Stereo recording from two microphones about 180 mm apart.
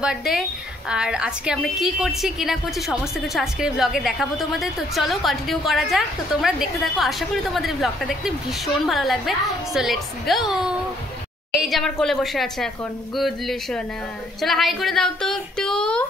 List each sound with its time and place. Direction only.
0.0 s a woman's voice: 5° right (ahead or behind)